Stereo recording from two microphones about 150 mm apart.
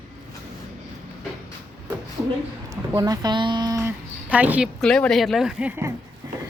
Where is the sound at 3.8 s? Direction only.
15° right (ahead or behind).